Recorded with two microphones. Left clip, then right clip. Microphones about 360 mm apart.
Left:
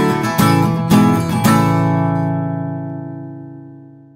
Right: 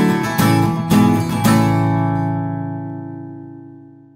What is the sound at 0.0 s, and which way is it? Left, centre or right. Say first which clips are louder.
Music: left 2 dB; centre.